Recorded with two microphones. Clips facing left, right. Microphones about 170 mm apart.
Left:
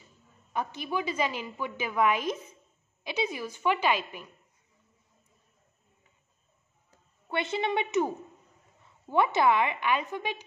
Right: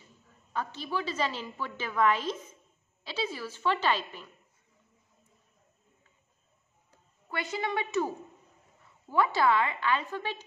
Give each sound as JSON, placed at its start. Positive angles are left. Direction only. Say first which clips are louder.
{"t": 0.5, "sound": "a woman's voice", "louder": "left 2 dB", "side_deg": 15}
{"t": 7.2, "sound": "a woman's voice", "louder": "left 4 dB", "side_deg": 25}
{"t": 9.1, "sound": "a woman's voice", "louder": "left 2 dB", "side_deg": 20}